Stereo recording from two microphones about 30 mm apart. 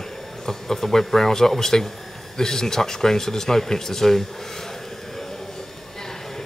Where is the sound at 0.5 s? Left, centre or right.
Centre.